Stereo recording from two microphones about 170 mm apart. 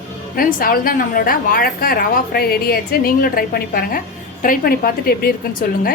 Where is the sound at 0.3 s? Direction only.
60° left (ahead or behind).